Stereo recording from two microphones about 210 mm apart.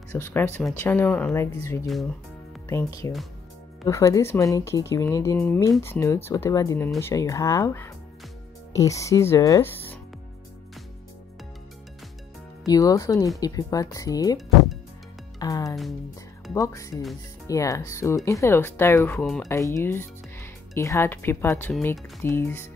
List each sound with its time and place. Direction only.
0.1 s speech: 10° left (ahead or behind)
3.0 s speech: 15° left (ahead or behind)
12.6 s speech: 15° left (ahead or behind)